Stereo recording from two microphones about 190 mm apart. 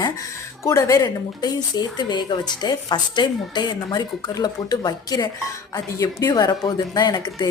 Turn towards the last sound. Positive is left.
turn(degrees=20)  # may be behind; listen again after turning